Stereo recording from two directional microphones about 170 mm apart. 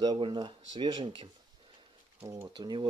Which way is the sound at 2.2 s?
20° right (ahead or behind).